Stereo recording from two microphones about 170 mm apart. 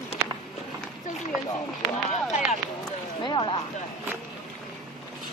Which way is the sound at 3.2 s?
25° left (ahead or behind).